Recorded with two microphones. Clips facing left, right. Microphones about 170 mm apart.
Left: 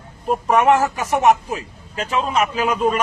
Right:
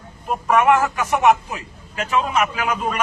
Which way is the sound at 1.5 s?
35° left (ahead or behind).